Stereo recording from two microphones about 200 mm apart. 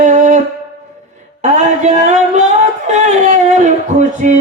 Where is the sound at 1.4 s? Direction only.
35° right (ahead or behind).